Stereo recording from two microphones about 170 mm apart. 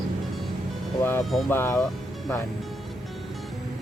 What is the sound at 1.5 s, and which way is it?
Speech, 15° left (ahead or behind).